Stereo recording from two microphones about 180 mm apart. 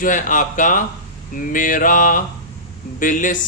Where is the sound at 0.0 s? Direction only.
45° left (ahead or behind).